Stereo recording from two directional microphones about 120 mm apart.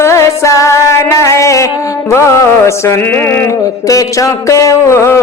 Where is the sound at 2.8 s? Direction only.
20° left (ahead or behind).